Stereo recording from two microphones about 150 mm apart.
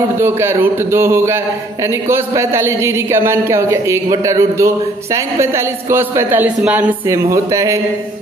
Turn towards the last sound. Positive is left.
turn(degrees=-20)  # may be behind; listen again after turning